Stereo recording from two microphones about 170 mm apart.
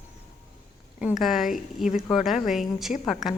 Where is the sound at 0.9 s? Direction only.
5° right (ahead or behind).